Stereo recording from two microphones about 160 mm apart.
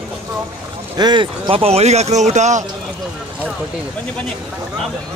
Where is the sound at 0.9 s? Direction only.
25° right (ahead or behind); by 2.6 s 45° right (ahead or behind).